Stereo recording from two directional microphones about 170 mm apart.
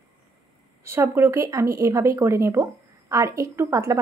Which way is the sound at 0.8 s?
15° right (ahead or behind).